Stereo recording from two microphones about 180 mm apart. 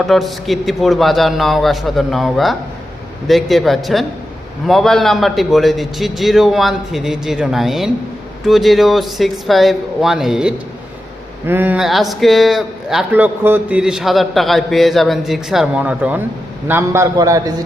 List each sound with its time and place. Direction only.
0.0 s a man's voice: centre (ahead or behind); by 17.5 s 20° right (ahead or behind)